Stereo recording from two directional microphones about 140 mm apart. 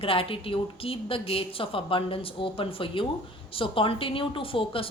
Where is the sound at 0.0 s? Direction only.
40° left (ahead or behind).